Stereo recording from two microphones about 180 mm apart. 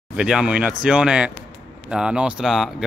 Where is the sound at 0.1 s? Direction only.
5° right (ahead or behind).